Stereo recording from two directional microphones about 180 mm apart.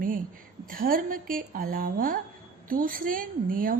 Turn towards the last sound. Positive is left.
turn(degrees=-50)  # may be behind; listen again after turning